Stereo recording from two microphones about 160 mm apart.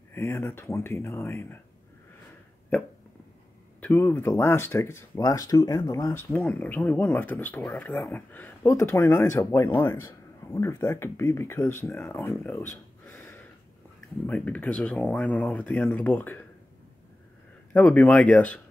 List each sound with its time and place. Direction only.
0.1 s speech: 15° left (ahead or behind)
3.8 s speech: 10° left (ahead or behind)
6.3 s speech: 10° left (ahead or behind)
17.7 s speech: 10° left (ahead or behind)